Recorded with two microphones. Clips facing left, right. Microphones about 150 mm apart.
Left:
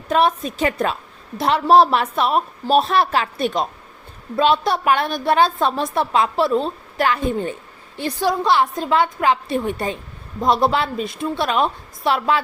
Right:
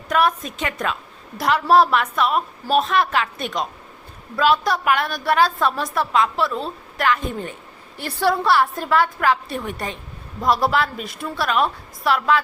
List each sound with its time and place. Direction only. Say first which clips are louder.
0.1 s a woman's voice: left 2 dB; 25° left (ahead or behind)
7.9 s a woman's voice: even; 15° left (ahead or behind)